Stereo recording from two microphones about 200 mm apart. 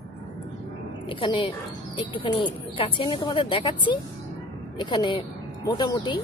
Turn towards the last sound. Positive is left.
turn(degrees=20)  # may be behind; listen again after turning